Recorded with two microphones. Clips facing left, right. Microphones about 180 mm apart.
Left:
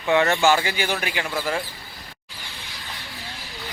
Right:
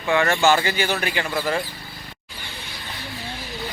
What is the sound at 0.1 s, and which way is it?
Speech, 20° left (ahead or behind).